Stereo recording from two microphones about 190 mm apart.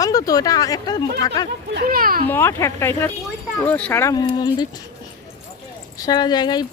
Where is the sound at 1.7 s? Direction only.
50° right (ahead or behind).